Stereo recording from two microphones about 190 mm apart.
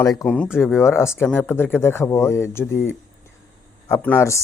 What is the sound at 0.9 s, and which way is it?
Speech, 15° left (ahead or behind).